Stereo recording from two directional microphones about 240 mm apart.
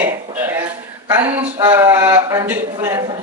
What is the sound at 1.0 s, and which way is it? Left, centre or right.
A woman's voice, centre.